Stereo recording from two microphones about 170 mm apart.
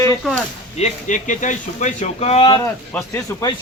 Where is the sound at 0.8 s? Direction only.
45° left (ahead or behind).